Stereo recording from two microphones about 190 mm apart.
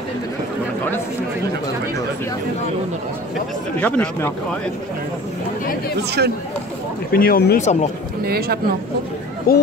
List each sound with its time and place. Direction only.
3.8 s speech: 5° left (ahead or behind)
6.0 s speech: 60° right (ahead or behind)
7.1 s speech: 50° left (ahead or behind)
8.2 s speech: 55° right (ahead or behind)
9.5 s speech: 50° left (ahead or behind)